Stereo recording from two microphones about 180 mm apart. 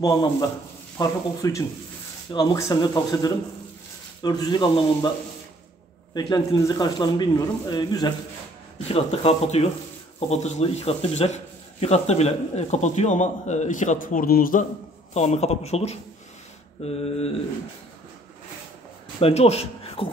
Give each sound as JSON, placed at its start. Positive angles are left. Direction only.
{"t": 0.0, "sound": "speech", "side_deg": 20}
{"t": 6.1, "sound": "speech", "side_deg": 25}
{"t": 8.8, "sound": "speech", "side_deg": 35}
{"t": 15.1, "sound": "speech", "side_deg": 35}
{"t": 19.1, "sound": "speech", "side_deg": 35}